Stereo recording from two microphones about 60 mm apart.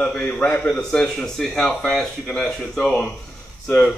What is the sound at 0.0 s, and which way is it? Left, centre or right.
Speech, centre.